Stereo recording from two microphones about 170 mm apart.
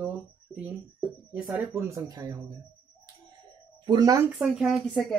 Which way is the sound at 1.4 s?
15° right (ahead or behind).